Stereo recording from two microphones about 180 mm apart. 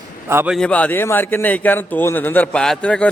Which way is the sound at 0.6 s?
5° left (ahead or behind).